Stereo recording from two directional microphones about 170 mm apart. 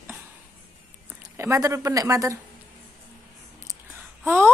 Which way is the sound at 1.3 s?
15° right (ahead or behind).